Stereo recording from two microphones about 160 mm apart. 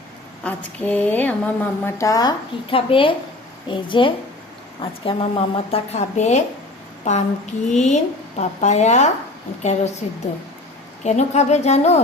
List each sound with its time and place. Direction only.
0.4 s a woman's voice: 10° left (ahead or behind); by 9.0 s 45° left (ahead or behind)
11.0 s a woman's voice: 45° left (ahead or behind)